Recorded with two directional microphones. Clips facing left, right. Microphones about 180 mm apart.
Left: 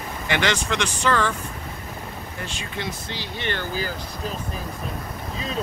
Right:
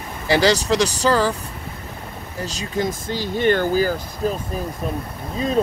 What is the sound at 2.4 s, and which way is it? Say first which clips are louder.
Speech: right 9 dB; 40° right (ahead or behind).